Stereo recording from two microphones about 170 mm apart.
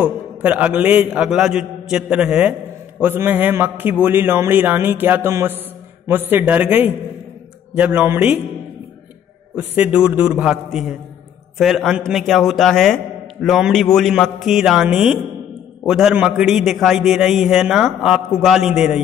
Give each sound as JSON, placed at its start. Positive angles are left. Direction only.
{"t": 0.0, "sound": "a man's voice", "side_deg": -10}
{"t": 3.0, "sound": "music", "side_deg": -10}
{"t": 9.6, "sound": "music", "side_deg": -10}
{"t": 11.5, "sound": "a man's voice", "side_deg": 0}